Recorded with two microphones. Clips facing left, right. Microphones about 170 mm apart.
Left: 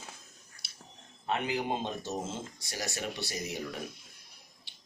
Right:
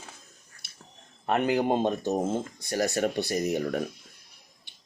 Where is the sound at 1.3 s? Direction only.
60° right (ahead or behind).